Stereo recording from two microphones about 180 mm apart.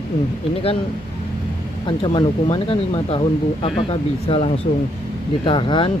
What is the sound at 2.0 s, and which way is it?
Speech, 30° left (ahead or behind).